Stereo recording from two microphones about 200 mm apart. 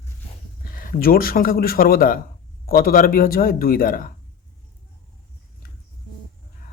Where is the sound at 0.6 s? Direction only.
45° left (ahead or behind).